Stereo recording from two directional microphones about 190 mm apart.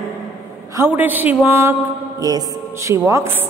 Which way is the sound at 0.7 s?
10° right (ahead or behind).